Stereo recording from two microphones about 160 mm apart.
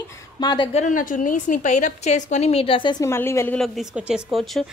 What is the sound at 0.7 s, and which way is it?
A woman's voice, 50° left (ahead or behind).